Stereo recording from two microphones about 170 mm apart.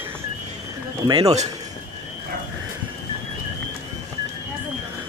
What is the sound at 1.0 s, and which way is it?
Speech, 30° right (ahead or behind).